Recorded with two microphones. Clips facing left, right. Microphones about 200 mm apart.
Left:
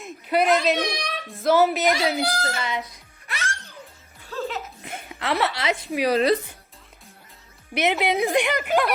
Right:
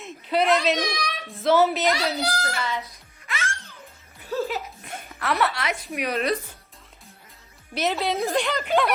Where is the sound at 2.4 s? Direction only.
20° left (ahead or behind).